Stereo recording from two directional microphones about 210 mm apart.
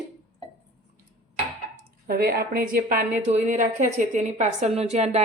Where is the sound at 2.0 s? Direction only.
45° right (ahead or behind).